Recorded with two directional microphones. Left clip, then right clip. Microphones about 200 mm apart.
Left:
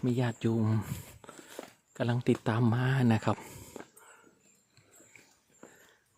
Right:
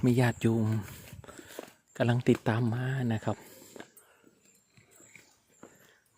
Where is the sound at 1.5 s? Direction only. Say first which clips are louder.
Right 3 dB; 10° right (ahead or behind).